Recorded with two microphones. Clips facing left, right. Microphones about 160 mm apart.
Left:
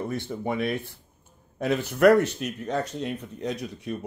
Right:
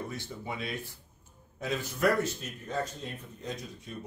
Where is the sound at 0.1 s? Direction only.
55° left (ahead or behind).